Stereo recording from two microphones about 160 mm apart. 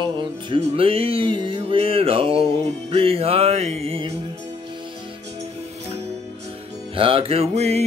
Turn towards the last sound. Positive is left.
turn(degrees=-45)  # may be behind; listen again after turning